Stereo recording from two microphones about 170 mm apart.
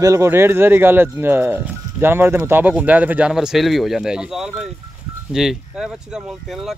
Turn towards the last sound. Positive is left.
turn(degrees=0)  # may be behind; listen again after turning